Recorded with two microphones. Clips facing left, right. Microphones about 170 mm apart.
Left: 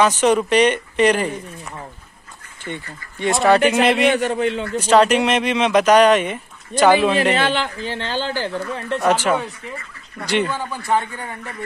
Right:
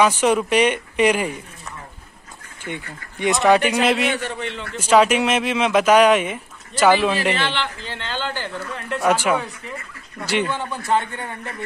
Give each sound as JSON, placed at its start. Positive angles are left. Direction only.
{"t": 0.0, "sound": "speech", "side_deg": -10}
{"t": 2.6, "sound": "speech", "side_deg": -15}
{"t": 3.8, "sound": "speech", "side_deg": 0}
{"t": 4.1, "sound": "a man's voice", "side_deg": 45}
{"t": 4.8, "sound": "speech", "side_deg": -5}
{"t": 7.3, "sound": "a man's voice", "side_deg": 45}
{"t": 8.9, "sound": "speech", "side_deg": -5}